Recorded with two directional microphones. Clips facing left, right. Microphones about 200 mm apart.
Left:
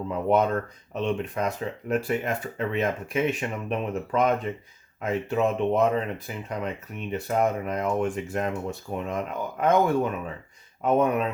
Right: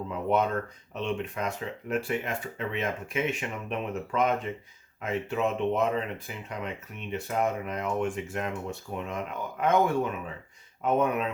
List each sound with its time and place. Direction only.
0.1 s speech: 40° left (ahead or behind)